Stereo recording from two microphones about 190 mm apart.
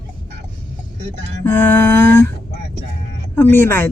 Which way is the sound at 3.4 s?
10° left (ahead or behind).